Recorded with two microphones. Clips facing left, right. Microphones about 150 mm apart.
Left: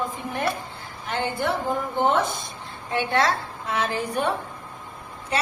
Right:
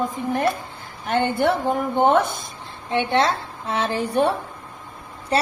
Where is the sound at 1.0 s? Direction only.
55° right (ahead or behind).